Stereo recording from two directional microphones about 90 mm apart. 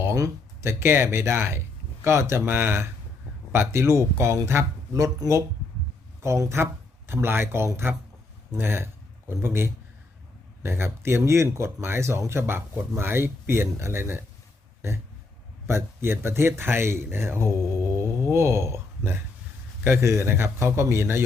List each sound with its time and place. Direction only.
0.0 s speech: 30° right (ahead or behind)
15.6 s speech: 30° right (ahead or behind)
19.8 s speech: 30° right (ahead or behind)